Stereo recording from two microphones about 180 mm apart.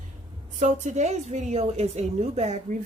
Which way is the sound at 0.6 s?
40° right (ahead or behind).